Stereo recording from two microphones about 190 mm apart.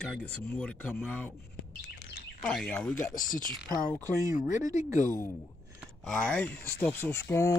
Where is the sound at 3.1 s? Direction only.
45° left (ahead or behind).